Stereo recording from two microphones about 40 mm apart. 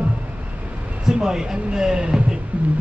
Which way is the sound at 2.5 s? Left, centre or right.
Right.